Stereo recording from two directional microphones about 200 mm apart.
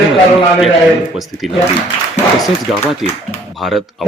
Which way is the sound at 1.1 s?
Centre (ahead or behind).